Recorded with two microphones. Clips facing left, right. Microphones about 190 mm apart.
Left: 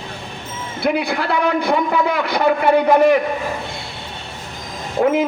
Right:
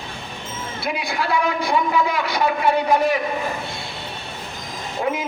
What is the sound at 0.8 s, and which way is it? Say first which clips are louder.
A man's voice: left 6 dB; 60° left (ahead or behind).